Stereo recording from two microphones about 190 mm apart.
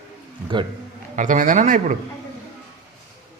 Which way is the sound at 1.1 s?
40° right (ahead or behind).